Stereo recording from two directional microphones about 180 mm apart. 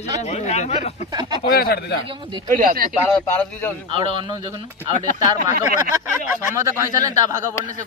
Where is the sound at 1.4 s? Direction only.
60° left (ahead or behind).